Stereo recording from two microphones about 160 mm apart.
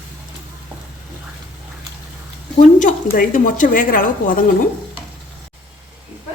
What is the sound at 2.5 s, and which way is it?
A woman's voice, 50° left (ahead or behind).